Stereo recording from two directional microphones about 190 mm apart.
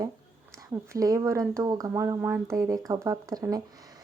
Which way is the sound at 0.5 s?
15° right (ahead or behind).